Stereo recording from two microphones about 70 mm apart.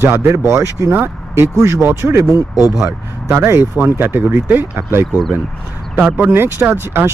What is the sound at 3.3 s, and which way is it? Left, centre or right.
Speech, right.